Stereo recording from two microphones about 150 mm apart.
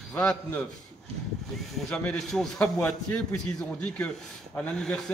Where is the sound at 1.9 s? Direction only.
5° left (ahead or behind).